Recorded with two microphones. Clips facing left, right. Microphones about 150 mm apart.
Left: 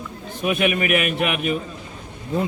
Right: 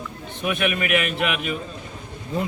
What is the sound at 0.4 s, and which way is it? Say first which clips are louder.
Speech: left 3 dB; 20° left (ahead or behind).